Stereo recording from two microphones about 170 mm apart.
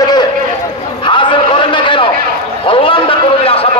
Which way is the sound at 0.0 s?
25° left (ahead or behind).